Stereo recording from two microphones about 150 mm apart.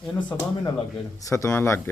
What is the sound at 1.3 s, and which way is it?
Speech, 15° left (ahead or behind).